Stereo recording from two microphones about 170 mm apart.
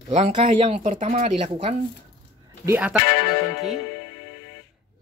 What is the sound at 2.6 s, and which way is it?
Speech, 10° right (ahead or behind).